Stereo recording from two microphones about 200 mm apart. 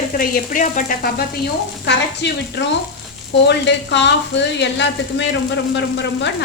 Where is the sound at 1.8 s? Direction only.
60° left (ahead or behind).